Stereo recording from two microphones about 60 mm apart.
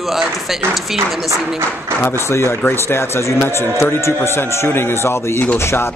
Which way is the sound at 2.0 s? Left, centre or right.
Left.